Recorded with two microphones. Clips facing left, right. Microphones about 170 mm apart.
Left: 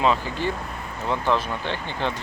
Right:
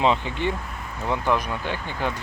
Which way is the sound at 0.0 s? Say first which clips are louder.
Even; 20° right (ahead or behind).